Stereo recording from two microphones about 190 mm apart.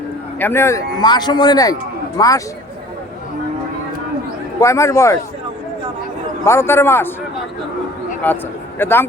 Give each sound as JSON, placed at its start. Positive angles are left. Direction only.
{"t": 0.3, "sound": "a man's voice", "side_deg": 10}
{"t": 4.6, "sound": "a man's voice", "side_deg": 15}
{"t": 6.4, "sound": "a man's voice", "side_deg": 15}
{"t": 8.2, "sound": "a man's voice", "side_deg": 10}